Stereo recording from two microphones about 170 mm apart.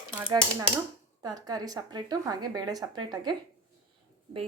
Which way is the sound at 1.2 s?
20° right (ahead or behind).